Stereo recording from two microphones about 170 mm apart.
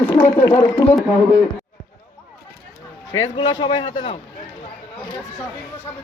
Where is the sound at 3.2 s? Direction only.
25° left (ahead or behind).